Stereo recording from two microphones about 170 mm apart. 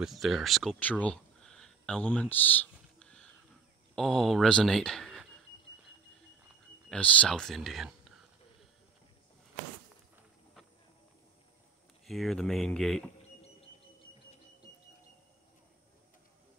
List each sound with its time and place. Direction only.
0.0 s speech: centre (ahead or behind)
6.9 s speech: 10° left (ahead or behind)
12.1 s speech: centre (ahead or behind)